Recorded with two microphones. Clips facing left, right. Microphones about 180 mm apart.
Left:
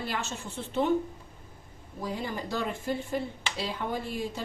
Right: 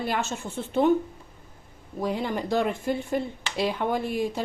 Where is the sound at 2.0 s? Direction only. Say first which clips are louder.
Right 6 dB; 70° right (ahead or behind).